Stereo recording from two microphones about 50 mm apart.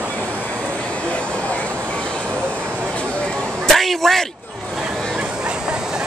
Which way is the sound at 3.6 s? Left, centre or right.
Centre.